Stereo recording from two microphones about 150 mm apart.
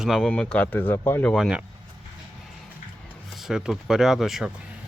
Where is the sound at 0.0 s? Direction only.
Centre (ahead or behind).